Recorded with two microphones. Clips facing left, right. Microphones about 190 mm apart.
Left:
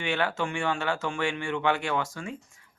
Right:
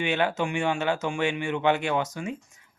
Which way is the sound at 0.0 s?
20° right (ahead or behind).